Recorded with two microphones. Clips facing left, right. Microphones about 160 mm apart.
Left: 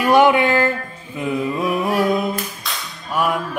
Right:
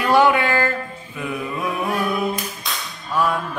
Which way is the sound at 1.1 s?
20° left (ahead or behind).